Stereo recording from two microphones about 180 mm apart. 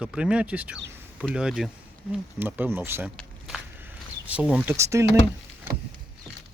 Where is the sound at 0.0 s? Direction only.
5° right (ahead or behind).